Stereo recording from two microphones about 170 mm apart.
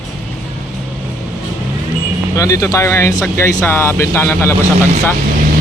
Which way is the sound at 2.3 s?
20° left (ahead or behind).